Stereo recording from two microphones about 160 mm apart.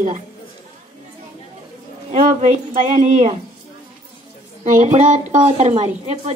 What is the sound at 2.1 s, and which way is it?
A woman's voice, 50° right (ahead or behind).